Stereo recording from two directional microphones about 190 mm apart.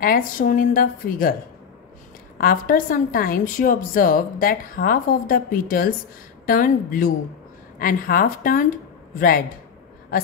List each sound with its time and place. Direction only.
0.0 s a woman's voice: 45° left (ahead or behind)
2.3 s a woman's voice: 45° left (ahead or behind)